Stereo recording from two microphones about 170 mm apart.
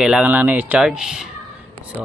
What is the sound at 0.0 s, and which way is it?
Speech, 5° right (ahead or behind).